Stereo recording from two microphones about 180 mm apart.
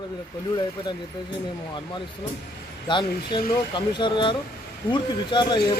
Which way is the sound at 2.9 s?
25° left (ahead or behind).